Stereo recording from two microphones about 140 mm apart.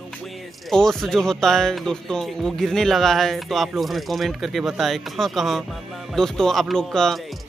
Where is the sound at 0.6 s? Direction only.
5° left (ahead or behind).